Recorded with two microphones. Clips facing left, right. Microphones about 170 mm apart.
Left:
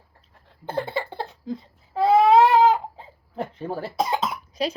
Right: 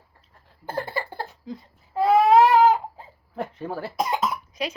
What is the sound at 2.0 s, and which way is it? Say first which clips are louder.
Baby cry: left 1 dB; 30° left (ahead or behind).